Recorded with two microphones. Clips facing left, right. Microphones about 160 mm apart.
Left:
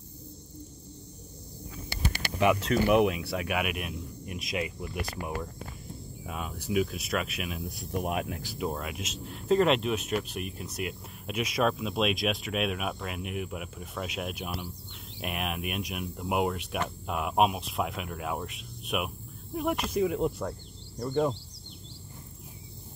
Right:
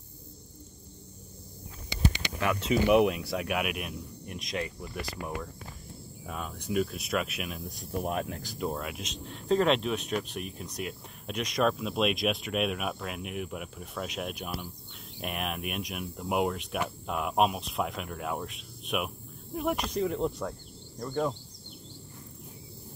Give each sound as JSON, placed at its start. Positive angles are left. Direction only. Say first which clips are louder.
{"t": 2.9, "sound": "speech", "louder": "right 1 dB", "side_deg": 0}